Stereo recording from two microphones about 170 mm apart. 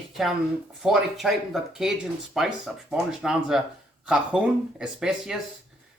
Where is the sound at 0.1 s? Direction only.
Centre (ahead or behind).